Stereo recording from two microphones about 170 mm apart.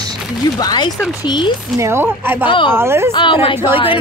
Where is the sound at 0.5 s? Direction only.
25° left (ahead or behind).